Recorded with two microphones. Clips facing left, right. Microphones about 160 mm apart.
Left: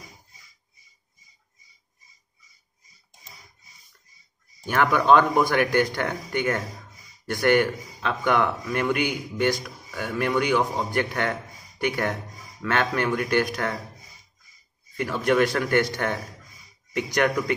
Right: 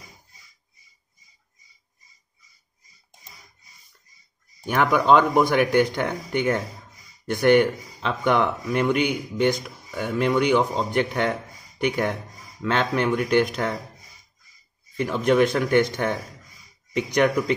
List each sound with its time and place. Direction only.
4.6 s a man's voice: 15° right (ahead or behind)
15.0 s speech: 15° right (ahead or behind)